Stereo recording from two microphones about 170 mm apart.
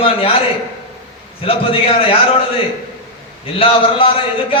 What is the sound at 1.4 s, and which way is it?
Speech, 35° left (ahead or behind).